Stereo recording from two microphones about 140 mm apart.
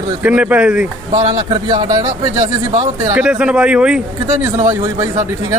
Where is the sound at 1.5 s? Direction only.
30° right (ahead or behind).